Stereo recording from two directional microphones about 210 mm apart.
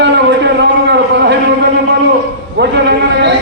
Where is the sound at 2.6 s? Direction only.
55° right (ahead or behind).